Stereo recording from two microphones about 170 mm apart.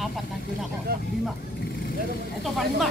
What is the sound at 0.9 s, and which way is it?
Speech, 65° right (ahead or behind).